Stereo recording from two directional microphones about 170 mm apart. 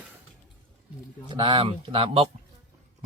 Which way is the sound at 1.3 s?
30° right (ahead or behind).